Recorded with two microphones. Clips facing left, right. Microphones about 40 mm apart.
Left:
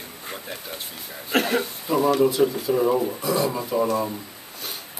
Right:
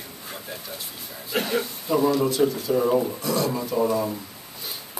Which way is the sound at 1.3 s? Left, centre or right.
Left.